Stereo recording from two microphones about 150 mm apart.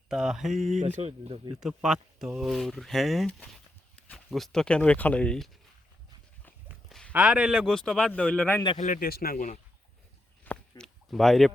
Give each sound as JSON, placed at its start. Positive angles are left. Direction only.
{"t": 0.1, "sound": "speech", "side_deg": -5}
{"t": 0.7, "sound": "speech", "side_deg": -50}
{"t": 1.5, "sound": "speech", "side_deg": -5}
{"t": 7.1, "sound": "speech", "side_deg": -5}
{"t": 8.8, "sound": "a man's voice", "side_deg": 65}
{"t": 10.4, "sound": "a sound", "side_deg": 10}
{"t": 11.1, "sound": "speech", "side_deg": 0}